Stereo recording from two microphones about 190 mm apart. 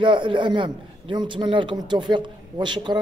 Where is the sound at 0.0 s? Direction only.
25° right (ahead or behind).